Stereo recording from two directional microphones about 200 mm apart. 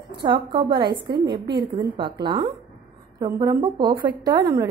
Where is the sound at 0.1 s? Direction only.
25° right (ahead or behind).